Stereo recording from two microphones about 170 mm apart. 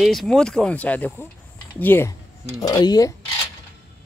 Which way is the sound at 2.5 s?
20° left (ahead or behind).